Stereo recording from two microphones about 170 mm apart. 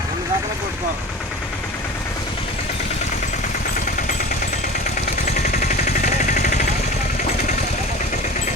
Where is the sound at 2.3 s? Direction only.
30° left (ahead or behind).